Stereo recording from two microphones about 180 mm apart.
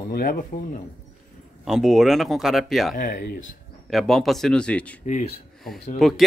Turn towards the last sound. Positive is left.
turn(degrees=0)  # may be behind; listen again after turning